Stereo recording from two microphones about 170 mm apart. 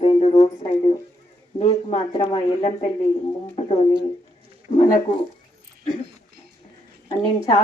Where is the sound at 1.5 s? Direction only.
40° left (ahead or behind).